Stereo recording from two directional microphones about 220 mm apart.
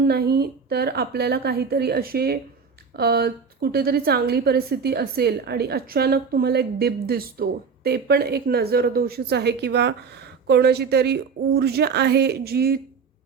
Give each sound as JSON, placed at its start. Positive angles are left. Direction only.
{"t": 0.0, "sound": "a woman's voice", "side_deg": -45}